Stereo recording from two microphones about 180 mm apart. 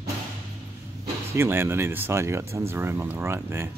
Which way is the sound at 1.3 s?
15° right (ahead or behind).